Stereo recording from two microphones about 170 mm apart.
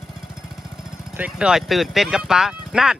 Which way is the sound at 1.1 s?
5° right (ahead or behind).